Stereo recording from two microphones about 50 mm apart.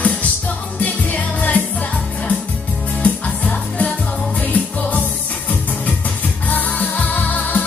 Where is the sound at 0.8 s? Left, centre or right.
Left.